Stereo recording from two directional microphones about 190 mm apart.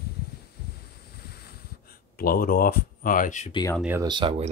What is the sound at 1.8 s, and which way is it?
Speech, 50° left (ahead or behind).